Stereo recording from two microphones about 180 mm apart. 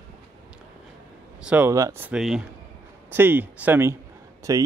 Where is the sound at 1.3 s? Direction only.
5° right (ahead or behind).